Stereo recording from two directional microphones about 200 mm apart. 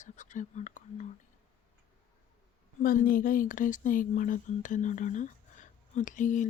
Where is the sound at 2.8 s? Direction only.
45° left (ahead or behind).